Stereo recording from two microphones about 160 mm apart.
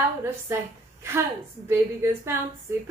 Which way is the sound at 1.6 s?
15° right (ahead or behind).